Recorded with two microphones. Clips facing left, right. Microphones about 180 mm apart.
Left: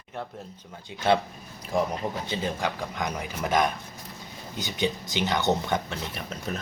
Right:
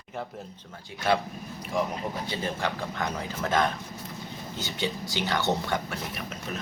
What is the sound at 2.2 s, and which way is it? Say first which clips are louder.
Speech: left 1 dB; 20° left (ahead or behind).